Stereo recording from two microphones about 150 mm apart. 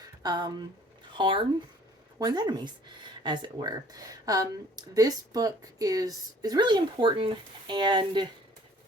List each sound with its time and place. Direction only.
0.2 s speech: 25° right (ahead or behind)